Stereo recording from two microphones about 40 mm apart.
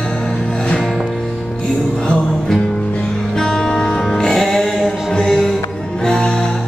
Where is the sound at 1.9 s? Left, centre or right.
Centre.